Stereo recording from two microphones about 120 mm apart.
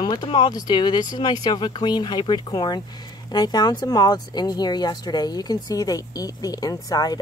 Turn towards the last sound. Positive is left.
turn(degrees=35)  # may be behind; listen again after turning